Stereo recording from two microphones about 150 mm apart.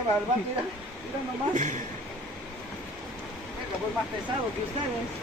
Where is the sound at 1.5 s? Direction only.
55° right (ahead or behind).